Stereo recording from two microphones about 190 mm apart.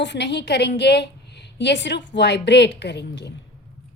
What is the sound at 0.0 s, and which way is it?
A woman's voice, 65° left (ahead or behind).